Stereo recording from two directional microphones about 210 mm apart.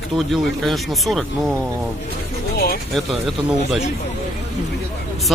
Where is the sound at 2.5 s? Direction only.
45° left (ahead or behind).